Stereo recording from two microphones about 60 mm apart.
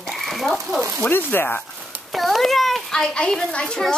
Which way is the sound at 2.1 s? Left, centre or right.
Centre.